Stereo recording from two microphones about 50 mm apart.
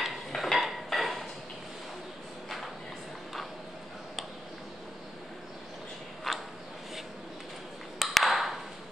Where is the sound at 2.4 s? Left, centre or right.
Centre.